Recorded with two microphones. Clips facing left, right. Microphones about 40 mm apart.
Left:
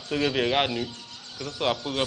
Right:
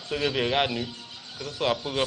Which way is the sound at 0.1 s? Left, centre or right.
Centre.